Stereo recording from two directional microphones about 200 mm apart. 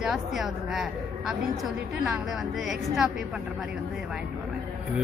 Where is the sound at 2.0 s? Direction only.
5° right (ahead or behind).